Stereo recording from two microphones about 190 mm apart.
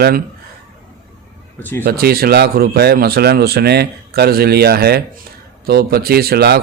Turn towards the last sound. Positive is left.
turn(degrees=-55)  # may be behind; listen again after turning